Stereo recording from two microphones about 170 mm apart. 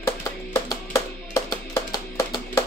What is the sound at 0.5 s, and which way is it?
Music, 15° left (ahead or behind).